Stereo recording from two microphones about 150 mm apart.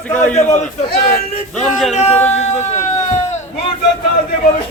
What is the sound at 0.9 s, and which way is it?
Speech, 90° left.